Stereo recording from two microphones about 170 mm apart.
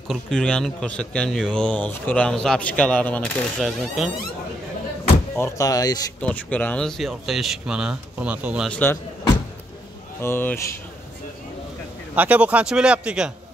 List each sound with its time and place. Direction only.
0.1 s a man's voice: 5° left (ahead or behind)
5.3 s speech: 15° left (ahead or behind)
6.2 s a man's voice: 10° left (ahead or behind); by 8.6 s 10° right (ahead or behind)
8.6 s speech: 10° left (ahead or behind)
10.2 s speech: 15° left (ahead or behind)
12.2 s speech: 10° right (ahead or behind)